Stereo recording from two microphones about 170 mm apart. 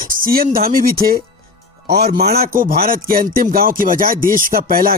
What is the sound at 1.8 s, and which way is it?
Speech, 70° right (ahead or behind).